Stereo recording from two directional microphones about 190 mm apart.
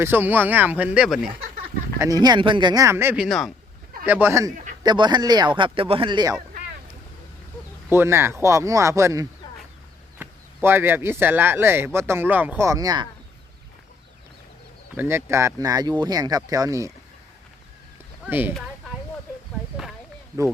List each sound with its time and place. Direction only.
0.0 s speech: 10° right (ahead or behind)
2.0 s speech: 20° right (ahead or behind)
3.2 s speech: centre (ahead or behind)
4.0 s speech: 10° right (ahead or behind)
7.9 s speech: 10° right (ahead or behind)
14.9 s speech: 10° right (ahead or behind)
18.3 s speech: 10° right (ahead or behind)